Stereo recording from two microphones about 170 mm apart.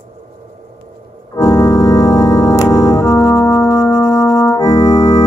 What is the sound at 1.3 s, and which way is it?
Organ, 15° left (ahead or behind).